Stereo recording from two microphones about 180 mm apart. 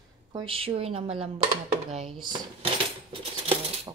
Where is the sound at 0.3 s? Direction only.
25° right (ahead or behind).